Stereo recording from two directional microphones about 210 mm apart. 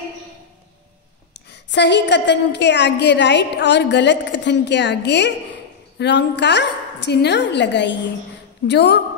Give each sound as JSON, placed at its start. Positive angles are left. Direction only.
{"t": 1.5, "sound": "a woman's voice", "side_deg": 55}